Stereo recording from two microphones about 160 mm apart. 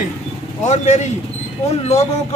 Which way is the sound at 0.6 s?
45° left (ahead or behind).